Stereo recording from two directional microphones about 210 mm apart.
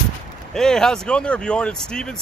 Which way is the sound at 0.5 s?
5° left (ahead or behind).